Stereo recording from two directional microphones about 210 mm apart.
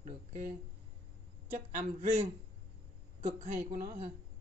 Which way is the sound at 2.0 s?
35° right (ahead or behind).